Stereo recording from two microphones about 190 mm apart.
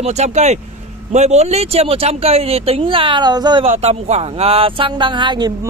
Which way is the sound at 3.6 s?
35° right (ahead or behind).